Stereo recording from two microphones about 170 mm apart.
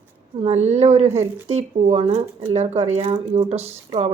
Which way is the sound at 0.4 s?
40° right (ahead or behind).